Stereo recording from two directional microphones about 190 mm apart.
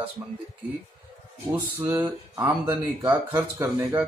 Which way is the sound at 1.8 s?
10° right (ahead or behind).